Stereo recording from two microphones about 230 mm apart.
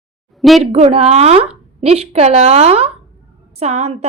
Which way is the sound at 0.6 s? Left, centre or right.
Right.